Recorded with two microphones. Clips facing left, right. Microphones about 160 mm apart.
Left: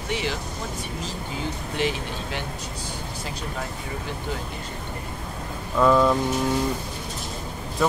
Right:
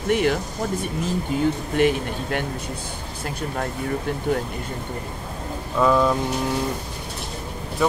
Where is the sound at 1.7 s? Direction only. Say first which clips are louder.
Right 3 dB; 55° right (ahead or behind).